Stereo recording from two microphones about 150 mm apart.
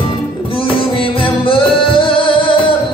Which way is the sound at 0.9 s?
35° left (ahead or behind).